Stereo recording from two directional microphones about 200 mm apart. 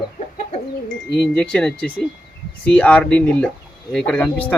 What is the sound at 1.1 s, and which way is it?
Speech, 5° left (ahead or behind).